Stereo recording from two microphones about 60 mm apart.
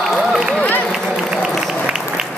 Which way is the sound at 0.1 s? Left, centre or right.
Centre.